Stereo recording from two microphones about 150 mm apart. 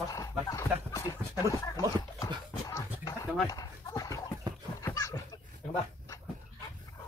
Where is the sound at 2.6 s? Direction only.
25° left (ahead or behind).